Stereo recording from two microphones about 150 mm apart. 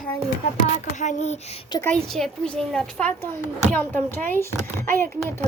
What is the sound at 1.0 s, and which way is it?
Speech, 55° left (ahead or behind).